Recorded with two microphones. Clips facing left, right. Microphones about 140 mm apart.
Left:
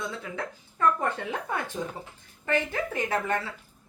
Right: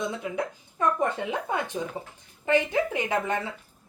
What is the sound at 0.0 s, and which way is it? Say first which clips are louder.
A woman's voice: right 5 dB; 15° right (ahead or behind).